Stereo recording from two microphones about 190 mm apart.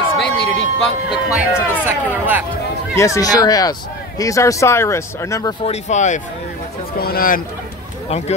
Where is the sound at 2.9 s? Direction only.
15° left (ahead or behind).